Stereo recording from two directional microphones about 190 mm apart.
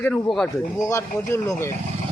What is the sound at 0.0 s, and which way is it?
Speech, 5° left (ahead or behind).